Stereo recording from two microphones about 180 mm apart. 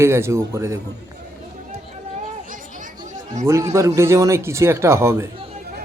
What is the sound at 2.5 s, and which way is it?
Chatter, 45° right (ahead or behind).